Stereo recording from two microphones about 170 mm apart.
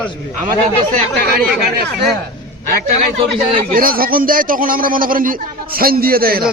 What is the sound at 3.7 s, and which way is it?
A man's voice, 60° right (ahead or behind).